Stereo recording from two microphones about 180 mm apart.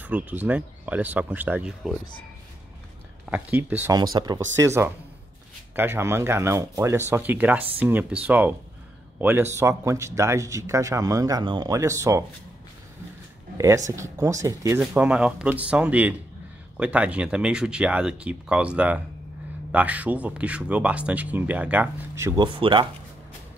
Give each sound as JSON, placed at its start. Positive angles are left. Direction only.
{"t": 0.0, "sound": "speech", "side_deg": -10}
{"t": 3.3, "sound": "speech", "side_deg": -10}
{"t": 13.6, "sound": "speech", "side_deg": -15}
{"t": 14.8, "sound": "speech", "side_deg": -5}